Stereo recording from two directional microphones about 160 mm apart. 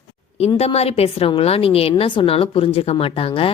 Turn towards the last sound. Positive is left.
turn(degrees=35)  # may be behind; listen again after turning